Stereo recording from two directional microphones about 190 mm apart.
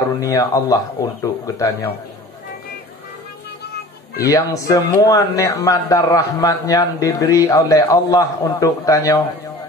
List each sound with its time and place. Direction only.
0.2 s a man's voice: 20° left (ahead or behind)
4.3 s speech: 15° left (ahead or behind)